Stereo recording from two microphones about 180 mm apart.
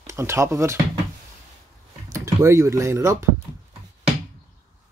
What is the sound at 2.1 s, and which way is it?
Speech, 15° right (ahead or behind).